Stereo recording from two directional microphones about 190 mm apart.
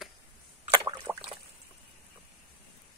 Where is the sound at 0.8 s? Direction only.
20° right (ahead or behind).